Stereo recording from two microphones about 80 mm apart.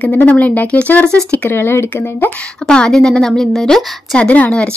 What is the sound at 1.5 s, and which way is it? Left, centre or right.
Speech, left.